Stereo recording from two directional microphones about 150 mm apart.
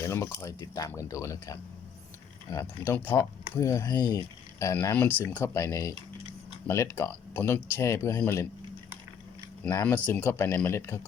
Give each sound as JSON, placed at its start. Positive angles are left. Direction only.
{"t": 0.0, "sound": "speech", "side_deg": 20}
{"t": 4.6, "sound": "speech", "side_deg": 15}
{"t": 9.6, "sound": "speech", "side_deg": 10}